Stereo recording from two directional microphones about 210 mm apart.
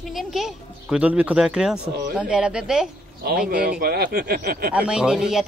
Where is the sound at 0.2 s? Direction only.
Centre (ahead or behind).